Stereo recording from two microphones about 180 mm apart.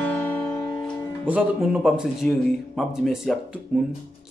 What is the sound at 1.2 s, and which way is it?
Speech, 5° right (ahead or behind).